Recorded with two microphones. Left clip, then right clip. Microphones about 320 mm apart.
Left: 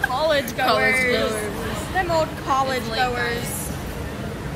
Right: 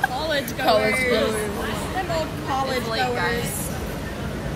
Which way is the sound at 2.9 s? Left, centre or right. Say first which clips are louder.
Even; right.